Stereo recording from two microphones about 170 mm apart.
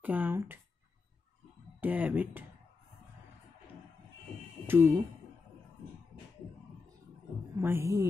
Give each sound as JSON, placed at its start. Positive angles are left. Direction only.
{"t": 0.0, "sound": "speech", "side_deg": -10}
{"t": 1.8, "sound": "speech", "side_deg": -10}
{"t": 4.6, "sound": "speech", "side_deg": -10}
{"t": 7.6, "sound": "speech", "side_deg": -15}